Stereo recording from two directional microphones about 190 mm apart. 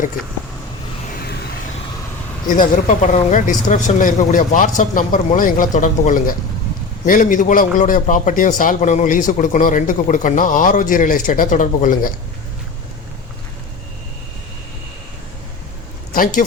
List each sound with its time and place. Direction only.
2.5 s a man's voice: 45° left (ahead or behind)
16.1 s a man's voice: 45° left (ahead or behind)